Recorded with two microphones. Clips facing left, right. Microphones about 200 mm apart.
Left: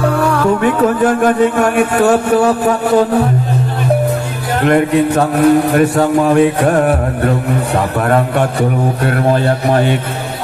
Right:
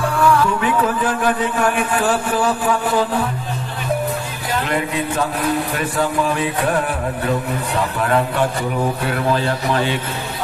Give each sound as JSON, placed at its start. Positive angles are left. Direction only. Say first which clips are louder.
{"t": 0.2, "sound": "speech", "louder": "even", "side_deg": 40}
{"t": 2.6, "sound": "music", "louder": "left 7 dB", "side_deg": 40}
{"t": 4.6, "sound": "speech", "louder": "left 13 dB", "side_deg": 55}
{"t": 5.6, "sound": "a man's voice", "louder": "left 11 dB", "side_deg": 65}
{"t": 6.2, "sound": "speech", "louder": "left 9 dB", "side_deg": 45}